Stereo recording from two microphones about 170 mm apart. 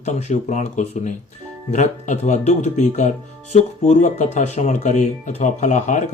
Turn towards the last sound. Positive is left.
turn(degrees=45)  # may be behind; listen again after turning